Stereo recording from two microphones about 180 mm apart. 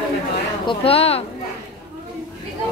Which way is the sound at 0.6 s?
30° left (ahead or behind).